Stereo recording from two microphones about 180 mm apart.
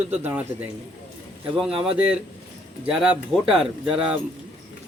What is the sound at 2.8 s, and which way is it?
Speech, 5° right (ahead or behind).